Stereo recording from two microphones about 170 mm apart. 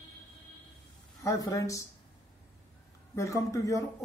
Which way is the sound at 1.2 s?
20° left (ahead or behind).